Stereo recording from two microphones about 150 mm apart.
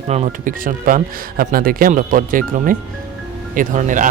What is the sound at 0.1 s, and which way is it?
Speech, 45° right (ahead or behind).